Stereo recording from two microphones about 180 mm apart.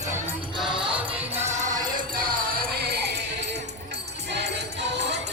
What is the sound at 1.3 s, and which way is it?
Music, 40° right (ahead or behind).